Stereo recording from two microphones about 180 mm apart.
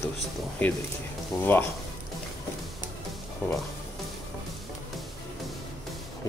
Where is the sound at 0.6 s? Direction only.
10° left (ahead or behind).